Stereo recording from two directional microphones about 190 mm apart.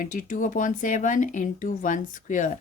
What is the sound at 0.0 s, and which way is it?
Speech, 45° left (ahead or behind).